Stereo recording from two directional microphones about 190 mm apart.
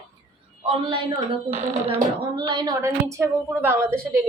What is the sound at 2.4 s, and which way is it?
A woman's voice, 20° right (ahead or behind).